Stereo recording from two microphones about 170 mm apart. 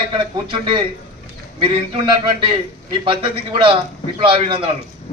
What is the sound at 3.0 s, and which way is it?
A man's voice, 30° right (ahead or behind).